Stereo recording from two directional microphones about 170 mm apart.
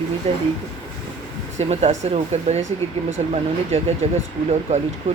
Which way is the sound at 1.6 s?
40° right (ahead or behind).